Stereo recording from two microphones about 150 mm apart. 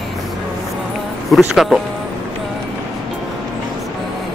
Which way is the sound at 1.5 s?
Centre (ahead or behind).